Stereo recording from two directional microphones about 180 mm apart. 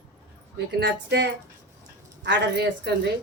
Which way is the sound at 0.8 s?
75° right (ahead or behind).